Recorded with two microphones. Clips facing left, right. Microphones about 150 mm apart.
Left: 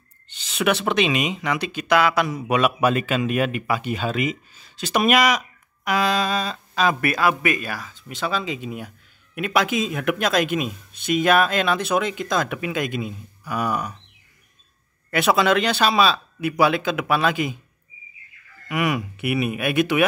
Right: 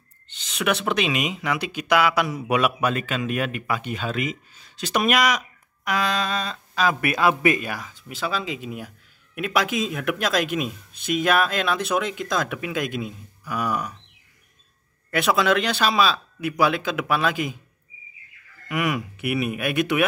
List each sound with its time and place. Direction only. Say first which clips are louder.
0.5 s speech: left 2 dB; centre (ahead or behind)
2.8 s speech: left 4 dB; 5° left (ahead or behind)
7.0 s speech: even; 20° right (ahead or behind)
8.1 s speech: left 2 dB; 5° right (ahead or behind)
15.0 s speech: left 2 dB; centre (ahead or behind)
18.7 s speech: left 2 dB; centre (ahead or behind)